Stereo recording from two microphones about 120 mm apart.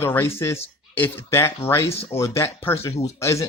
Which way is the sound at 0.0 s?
20° left (ahead or behind).